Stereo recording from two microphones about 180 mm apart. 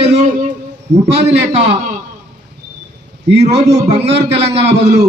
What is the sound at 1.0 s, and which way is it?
Speech, 70° right (ahead or behind).